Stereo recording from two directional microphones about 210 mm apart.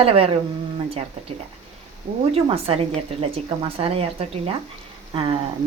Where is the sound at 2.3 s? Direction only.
30° right (ahead or behind).